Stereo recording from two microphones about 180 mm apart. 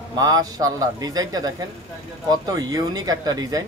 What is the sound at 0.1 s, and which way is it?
Speech, 20° right (ahead or behind).